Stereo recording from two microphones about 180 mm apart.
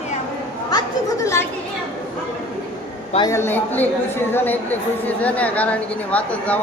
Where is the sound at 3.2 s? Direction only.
15° left (ahead or behind).